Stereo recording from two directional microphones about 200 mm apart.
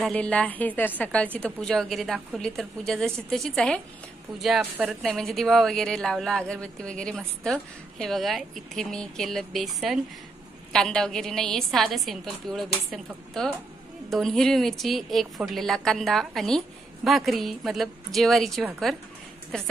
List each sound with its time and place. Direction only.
0.0 s speech: 5° left (ahead or behind)